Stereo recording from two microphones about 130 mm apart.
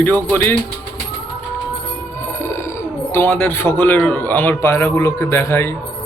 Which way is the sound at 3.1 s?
15° left (ahead or behind).